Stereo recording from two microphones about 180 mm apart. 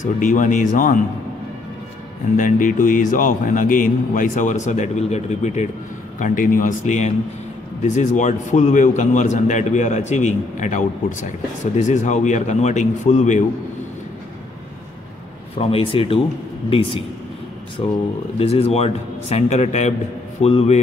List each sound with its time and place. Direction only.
0.0 s a man's voice: 45° left (ahead or behind)
2.3 s a man's voice: 45° left (ahead or behind)
15.5 s a man's voice: 30° left (ahead or behind)
18.4 s a man's voice: 35° left (ahead or behind)